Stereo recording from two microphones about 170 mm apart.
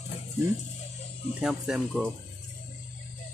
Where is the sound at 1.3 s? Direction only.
5° right (ahead or behind).